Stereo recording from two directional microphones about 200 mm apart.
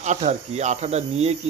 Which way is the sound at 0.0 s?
35° right (ahead or behind).